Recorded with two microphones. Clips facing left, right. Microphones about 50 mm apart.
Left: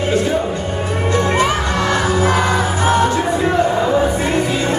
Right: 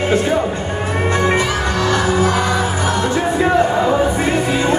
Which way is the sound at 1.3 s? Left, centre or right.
Left.